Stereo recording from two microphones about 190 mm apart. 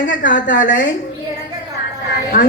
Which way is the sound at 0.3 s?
45° left (ahead or behind).